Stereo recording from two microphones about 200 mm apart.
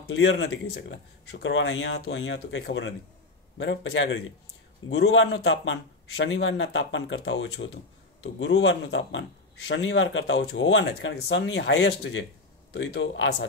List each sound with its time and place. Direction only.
0.0 s a man's voice: 65° left (ahead or behind)